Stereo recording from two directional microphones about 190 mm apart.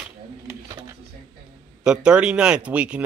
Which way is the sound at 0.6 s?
20° right (ahead or behind).